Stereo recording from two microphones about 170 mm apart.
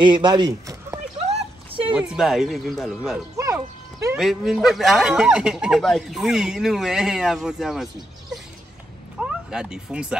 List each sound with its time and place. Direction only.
0.0 s speech: 25° right (ahead or behind)
1.2 s a sound: 35° right (ahead or behind)
2.0 s speech: 5° right (ahead or behind)
3.4 s music: 20° right (ahead or behind)
4.2 s speech: centre (ahead or behind)
9.2 s speech: 5° right (ahead or behind)